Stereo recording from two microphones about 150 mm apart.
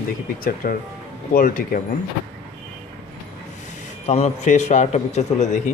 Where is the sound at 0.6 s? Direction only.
70° left (ahead or behind).